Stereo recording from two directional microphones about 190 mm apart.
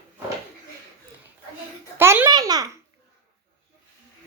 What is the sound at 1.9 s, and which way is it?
Babbling, 10° right (ahead or behind).